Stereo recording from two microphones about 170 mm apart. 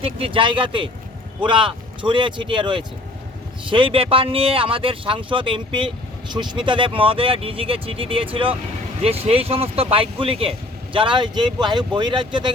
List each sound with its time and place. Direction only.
0.0 s speech: 30° right (ahead or behind)